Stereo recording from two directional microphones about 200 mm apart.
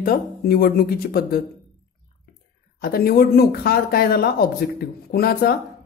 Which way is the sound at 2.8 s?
50° left (ahead or behind).